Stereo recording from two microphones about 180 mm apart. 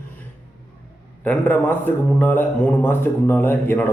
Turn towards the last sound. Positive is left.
turn(degrees=10)  # may be behind; listen again after turning